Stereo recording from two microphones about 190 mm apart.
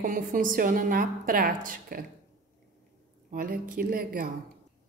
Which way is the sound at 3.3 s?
45° right (ahead or behind).